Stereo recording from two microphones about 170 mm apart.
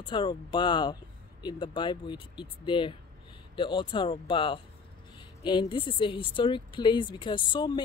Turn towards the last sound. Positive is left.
turn(degrees=25)  # may be behind; listen again after turning